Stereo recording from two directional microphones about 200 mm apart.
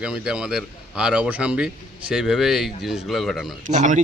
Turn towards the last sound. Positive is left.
turn(degrees=-40)  # may be behind; listen again after turning